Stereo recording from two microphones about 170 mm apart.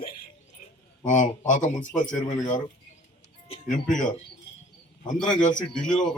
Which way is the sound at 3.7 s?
50° left (ahead or behind).